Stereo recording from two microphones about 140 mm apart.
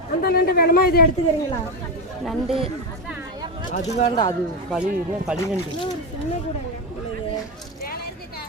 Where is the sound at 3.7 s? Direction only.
60° left (ahead or behind).